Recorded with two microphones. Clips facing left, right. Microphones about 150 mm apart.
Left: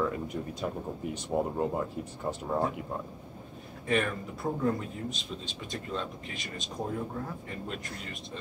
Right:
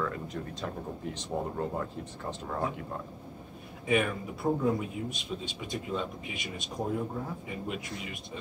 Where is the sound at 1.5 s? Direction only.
20° left (ahead or behind).